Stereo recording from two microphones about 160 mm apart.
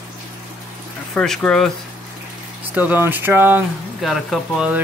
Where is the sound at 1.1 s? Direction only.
5° left (ahead or behind).